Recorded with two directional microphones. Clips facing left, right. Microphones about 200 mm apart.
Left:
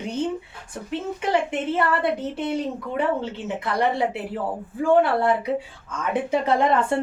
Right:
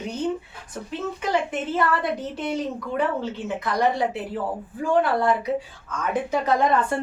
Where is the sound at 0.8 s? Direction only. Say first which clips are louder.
Left 2 dB; 25° left (ahead or behind).